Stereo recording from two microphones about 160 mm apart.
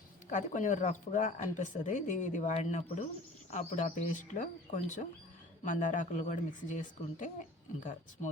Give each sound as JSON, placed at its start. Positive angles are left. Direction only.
{"t": 0.3, "sound": "speech", "side_deg": 50}